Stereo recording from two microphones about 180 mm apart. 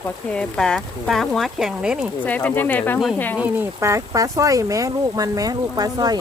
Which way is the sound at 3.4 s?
10° right (ahead or behind).